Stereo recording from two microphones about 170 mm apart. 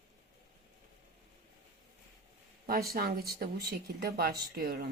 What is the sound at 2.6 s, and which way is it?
Speech, 60° right (ahead or behind).